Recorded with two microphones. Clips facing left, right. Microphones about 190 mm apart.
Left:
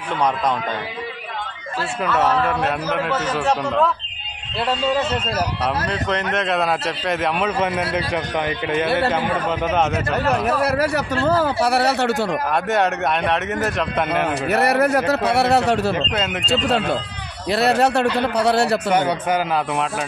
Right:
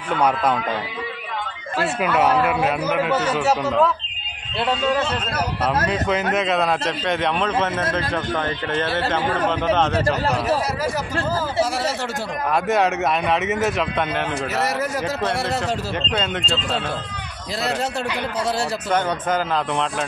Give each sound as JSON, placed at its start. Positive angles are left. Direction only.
{"t": 2.0, "sound": "a man's voice", "side_deg": -10}
{"t": 5.9, "sound": "a man's voice", "side_deg": -5}
{"t": 10.6, "sound": "a man's voice", "side_deg": 60}
{"t": 12.4, "sound": "a man's voice", "side_deg": 0}
{"t": 14.5, "sound": "a man's voice", "side_deg": 60}
{"t": 15.9, "sound": "a man's voice", "side_deg": 5}
{"t": 17.5, "sound": "a man's voice", "side_deg": 65}
{"t": 18.9, "sound": "a man's voice", "side_deg": 10}